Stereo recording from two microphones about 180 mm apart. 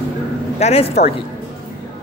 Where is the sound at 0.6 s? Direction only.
35° left (ahead or behind).